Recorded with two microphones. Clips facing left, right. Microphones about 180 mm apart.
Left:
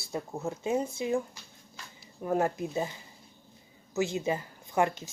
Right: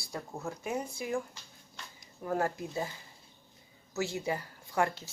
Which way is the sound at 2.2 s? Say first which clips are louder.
Left 4 dB; 20° left (ahead or behind).